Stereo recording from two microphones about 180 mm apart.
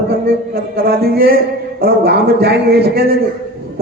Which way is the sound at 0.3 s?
55° right (ahead or behind).